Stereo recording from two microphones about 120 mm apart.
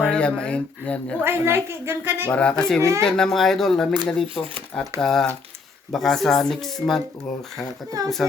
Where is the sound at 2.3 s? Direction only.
10° left (ahead or behind).